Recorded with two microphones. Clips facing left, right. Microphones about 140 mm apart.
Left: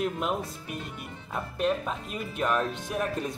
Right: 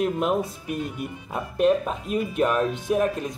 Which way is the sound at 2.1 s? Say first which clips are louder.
Right 6 dB; 10° right (ahead or behind).